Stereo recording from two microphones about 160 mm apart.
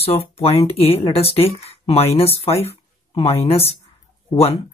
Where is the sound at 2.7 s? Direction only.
40° left (ahead or behind).